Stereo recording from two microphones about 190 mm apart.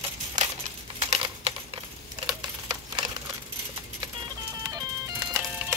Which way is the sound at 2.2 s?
20° right (ahead or behind).